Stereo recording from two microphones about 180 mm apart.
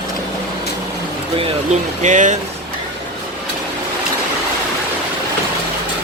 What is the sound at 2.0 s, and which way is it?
Speech, 40° right (ahead or behind).